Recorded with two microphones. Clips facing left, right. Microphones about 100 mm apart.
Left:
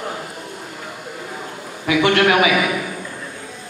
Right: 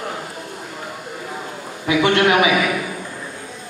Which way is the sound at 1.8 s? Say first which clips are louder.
Even; 25° right (ahead or behind).